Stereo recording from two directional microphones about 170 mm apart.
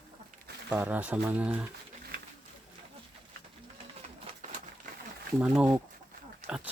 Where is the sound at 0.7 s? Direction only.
10° right (ahead or behind).